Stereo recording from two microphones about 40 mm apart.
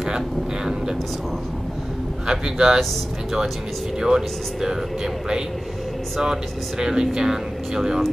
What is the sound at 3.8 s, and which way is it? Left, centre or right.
Speech, centre.